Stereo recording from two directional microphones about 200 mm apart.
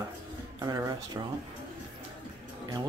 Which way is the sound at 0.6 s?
20° right (ahead or behind).